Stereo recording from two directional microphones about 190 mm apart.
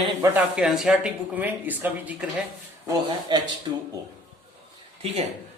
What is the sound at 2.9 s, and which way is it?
Speech, 25° right (ahead or behind).